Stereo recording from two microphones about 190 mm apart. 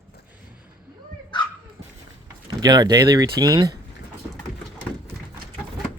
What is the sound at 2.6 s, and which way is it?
Speech, 20° right (ahead or behind).